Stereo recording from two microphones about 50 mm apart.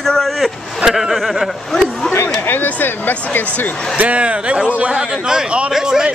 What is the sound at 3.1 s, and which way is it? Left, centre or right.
Speech, left.